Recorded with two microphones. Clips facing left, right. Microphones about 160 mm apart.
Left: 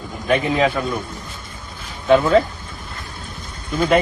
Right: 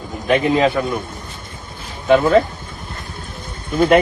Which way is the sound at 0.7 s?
20° right (ahead or behind).